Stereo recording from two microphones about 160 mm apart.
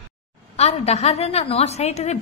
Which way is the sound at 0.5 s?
40° left (ahead or behind).